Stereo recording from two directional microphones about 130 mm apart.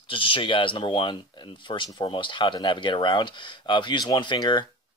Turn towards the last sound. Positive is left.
turn(degrees=35)  # may be behind; listen again after turning